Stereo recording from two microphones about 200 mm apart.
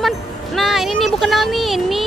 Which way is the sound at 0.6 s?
Centre (ahead or behind).